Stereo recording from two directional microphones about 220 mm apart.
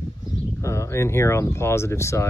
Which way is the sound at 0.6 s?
15° left (ahead or behind).